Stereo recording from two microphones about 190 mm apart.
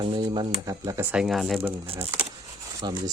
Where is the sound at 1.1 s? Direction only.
Centre (ahead or behind).